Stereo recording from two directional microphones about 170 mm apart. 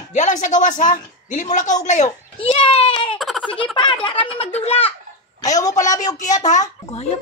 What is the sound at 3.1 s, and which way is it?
Baby laughter, centre (ahead or behind).